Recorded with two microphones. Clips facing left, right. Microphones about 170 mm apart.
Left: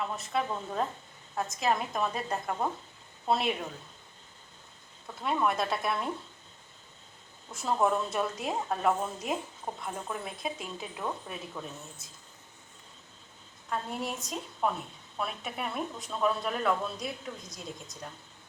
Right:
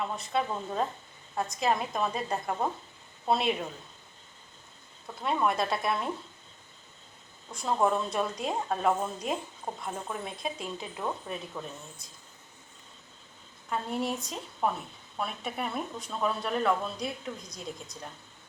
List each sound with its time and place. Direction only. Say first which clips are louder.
0.0 s a woman's voice: right 1 dB; centre (ahead or behind)
5.2 s a woman's voice: right 1 dB; centre (ahead or behind)
7.5 s a woman's voice: right 1 dB; centre (ahead or behind)
13.7 s a woman's voice: right 3 dB; centre (ahead or behind)